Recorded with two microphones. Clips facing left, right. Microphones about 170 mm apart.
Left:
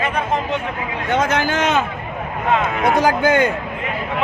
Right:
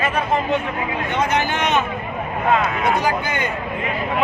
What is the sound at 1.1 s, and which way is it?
Speech, 90° left.